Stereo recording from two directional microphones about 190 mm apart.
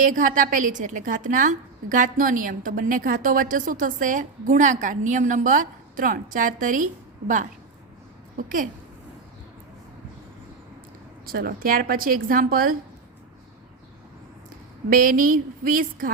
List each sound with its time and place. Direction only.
0.0 s a woman's voice: 45° right (ahead or behind)
11.3 s a woman's voice: 50° right (ahead or behind)
14.8 s a woman's voice: 45° right (ahead or behind)